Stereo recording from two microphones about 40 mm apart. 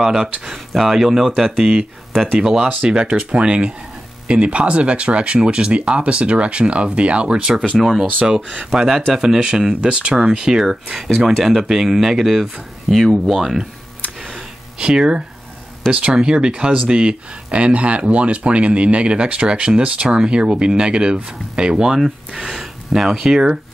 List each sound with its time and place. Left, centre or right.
0.0 s speech: centre
7.8 s speech: centre
10.7 s speech: centre
14.8 s speech: right
22.6 s a sound: centre
23.1 s speech: centre